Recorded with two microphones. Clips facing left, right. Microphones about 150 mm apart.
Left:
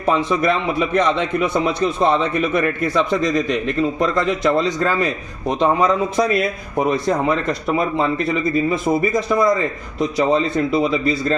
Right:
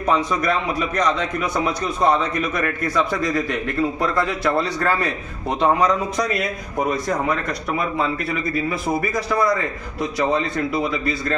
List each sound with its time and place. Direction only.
0.4 s a man's voice: 25° left (ahead or behind)